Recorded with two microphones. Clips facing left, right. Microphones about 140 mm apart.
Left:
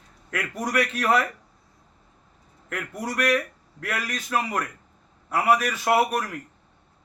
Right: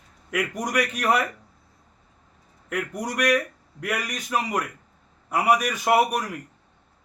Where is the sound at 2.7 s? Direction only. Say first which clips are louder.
Right 2 dB; 15° right (ahead or behind).